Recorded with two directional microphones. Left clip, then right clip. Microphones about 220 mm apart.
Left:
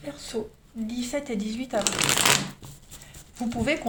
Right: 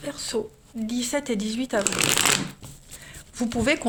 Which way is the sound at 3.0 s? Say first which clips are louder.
Right 3 dB; 50° right (ahead or behind).